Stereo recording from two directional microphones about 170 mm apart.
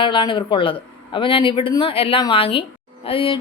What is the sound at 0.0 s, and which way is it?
Speech, 30° left (ahead or behind).